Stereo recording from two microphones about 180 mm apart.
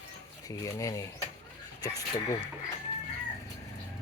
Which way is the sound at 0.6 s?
20° left (ahead or behind).